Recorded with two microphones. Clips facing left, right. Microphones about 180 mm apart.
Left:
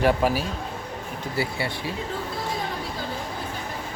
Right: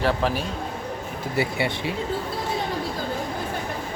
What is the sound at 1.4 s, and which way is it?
Speech, 20° right (ahead or behind).